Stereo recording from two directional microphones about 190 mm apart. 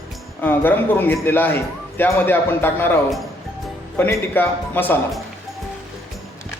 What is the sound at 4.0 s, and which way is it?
Speech, 10° left (ahead or behind).